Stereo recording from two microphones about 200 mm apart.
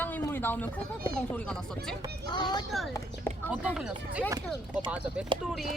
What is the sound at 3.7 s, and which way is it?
Speech, 5° right (ahead or behind).